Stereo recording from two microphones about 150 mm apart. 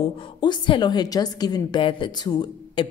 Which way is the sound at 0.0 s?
35° left (ahead or behind).